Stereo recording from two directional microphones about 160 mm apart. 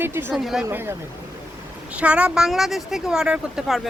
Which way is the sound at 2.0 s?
5° right (ahead or behind).